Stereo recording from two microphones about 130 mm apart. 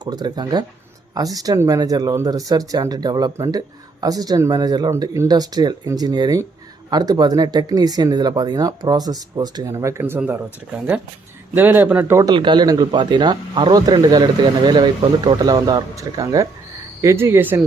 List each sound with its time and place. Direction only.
0.0 s speech: 30° right (ahead or behind); by 12.2 s 15° right (ahead or behind)
12.2 s speech: 35° right (ahead or behind); by 17.6 s 15° right (ahead or behind)